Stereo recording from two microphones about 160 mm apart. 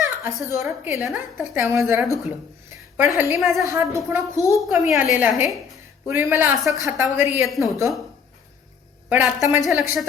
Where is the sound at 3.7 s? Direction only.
20° right (ahead or behind).